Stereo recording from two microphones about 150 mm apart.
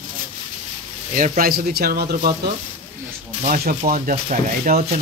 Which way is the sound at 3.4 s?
65° right (ahead or behind).